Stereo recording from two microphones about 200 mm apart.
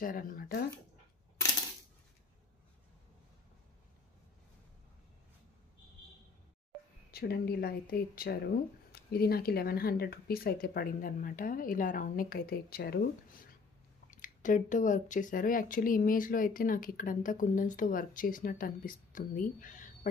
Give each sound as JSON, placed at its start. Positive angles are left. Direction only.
{"t": 0.0, "sound": "speech", "side_deg": 45}
{"t": 7.1, "sound": "speech", "side_deg": 50}